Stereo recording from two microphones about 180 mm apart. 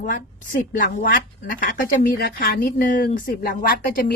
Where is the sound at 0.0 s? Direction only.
50° left (ahead or behind).